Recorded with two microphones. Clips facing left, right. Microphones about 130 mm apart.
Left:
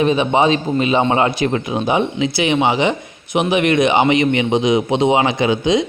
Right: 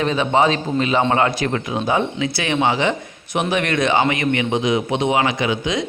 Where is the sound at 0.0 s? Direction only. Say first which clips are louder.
Left 3 dB; 20° left (ahead or behind).